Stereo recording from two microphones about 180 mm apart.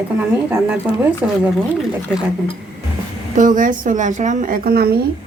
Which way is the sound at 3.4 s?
45° right (ahead or behind).